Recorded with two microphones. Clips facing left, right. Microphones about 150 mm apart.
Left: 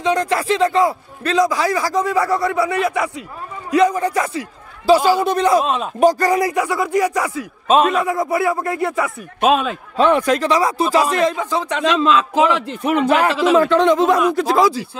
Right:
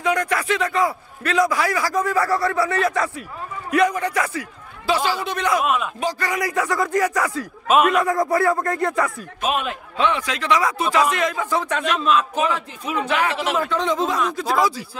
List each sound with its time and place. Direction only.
0.0 s a man's voice: 25° left (ahead or behind)
3.7 s a man's voice: 25° left (ahead or behind)
5.2 s speech: 35° left (ahead or behind)
5.9 s speech: 45° left (ahead or behind)
6.5 s speech: 10° left (ahead or behind)
7.6 s a man's voice: 30° left (ahead or behind)
8.0 s speech: 5° left (ahead or behind)
9.9 s speech: 45° left (ahead or behind)
11.3 s speech: 20° left (ahead or behind)
11.8 s a man's voice: 90° left; by 13.0 s 75° left (ahead or behind)
13.3 s a man's voice: 85° left; by 14.2 s 65° left (ahead or behind)
14.3 s a man's voice: 90° left